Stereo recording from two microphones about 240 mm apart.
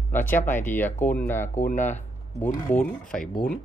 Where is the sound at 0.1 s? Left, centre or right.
Centre.